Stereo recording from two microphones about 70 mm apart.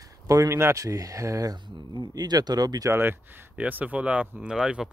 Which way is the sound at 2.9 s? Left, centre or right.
Right.